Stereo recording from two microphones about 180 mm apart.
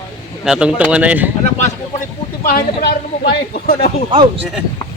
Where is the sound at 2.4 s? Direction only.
55° left (ahead or behind).